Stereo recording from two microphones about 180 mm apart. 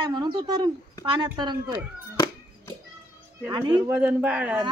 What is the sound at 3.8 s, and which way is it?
Speech, 10° right (ahead or behind).